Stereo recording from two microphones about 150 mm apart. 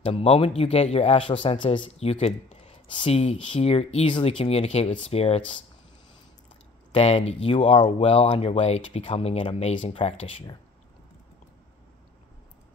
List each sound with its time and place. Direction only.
0.0 s speech: 35° left (ahead or behind)
6.9 s speech: 40° left (ahead or behind)